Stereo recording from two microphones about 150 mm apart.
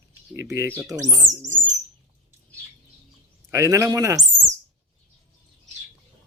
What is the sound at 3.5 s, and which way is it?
Speech, 20° right (ahead or behind).